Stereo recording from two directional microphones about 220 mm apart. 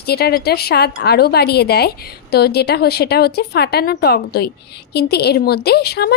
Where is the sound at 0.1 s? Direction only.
45° left (ahead or behind).